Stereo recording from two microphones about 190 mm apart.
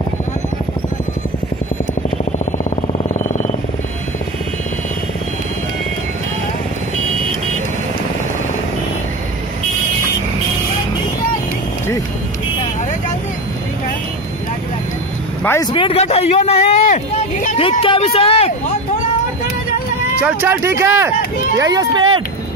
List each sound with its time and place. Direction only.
2.3 s vehicle: 40° left (ahead or behind)
15.4 s vehicle: 15° left (ahead or behind)
15.7 s a sound: 30° left (ahead or behind)
17.6 s vehicle: 30° left (ahead or behind)
20.2 s speech: 10° right (ahead or behind)